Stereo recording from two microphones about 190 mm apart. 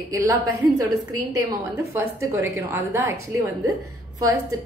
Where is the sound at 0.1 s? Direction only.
15° right (ahead or behind).